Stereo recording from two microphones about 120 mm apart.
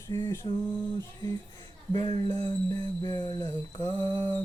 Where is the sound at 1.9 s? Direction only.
35° left (ahead or behind).